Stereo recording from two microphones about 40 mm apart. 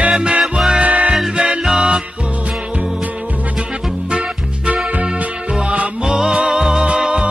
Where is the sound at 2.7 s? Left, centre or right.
Right.